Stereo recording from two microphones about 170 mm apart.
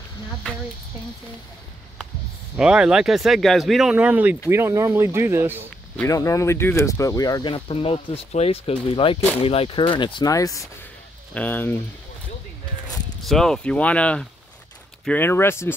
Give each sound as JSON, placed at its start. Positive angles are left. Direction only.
{"t": 2.5, "sound": "speech", "side_deg": -5}
{"t": 6.0, "sound": "speech", "side_deg": 20}
{"t": 13.2, "sound": "speech", "side_deg": 0}